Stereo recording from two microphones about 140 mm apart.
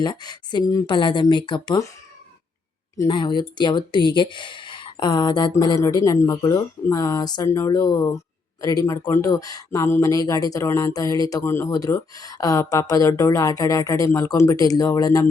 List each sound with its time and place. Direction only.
0.0 s speech: 30° left (ahead or behind)
3.1 s speech: 35° left (ahead or behind)